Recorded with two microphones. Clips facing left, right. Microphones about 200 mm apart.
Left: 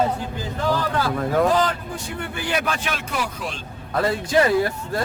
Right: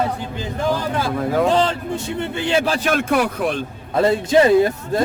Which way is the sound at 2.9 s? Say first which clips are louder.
Right 9 dB; 55° right (ahead or behind).